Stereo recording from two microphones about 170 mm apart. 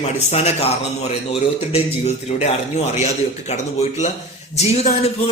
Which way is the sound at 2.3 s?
40° left (ahead or behind).